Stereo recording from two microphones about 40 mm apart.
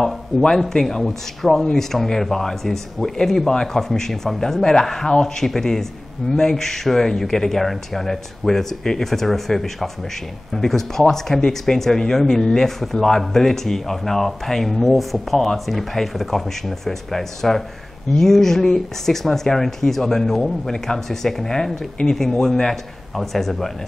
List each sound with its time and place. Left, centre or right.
0.6 s speech: centre